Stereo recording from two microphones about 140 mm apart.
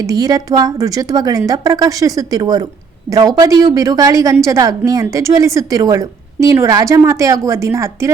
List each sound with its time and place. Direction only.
0.0 s a woman's voice: 25° right (ahead or behind)